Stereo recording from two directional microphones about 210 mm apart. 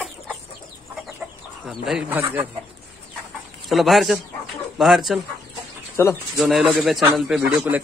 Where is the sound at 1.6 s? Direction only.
Centre (ahead or behind).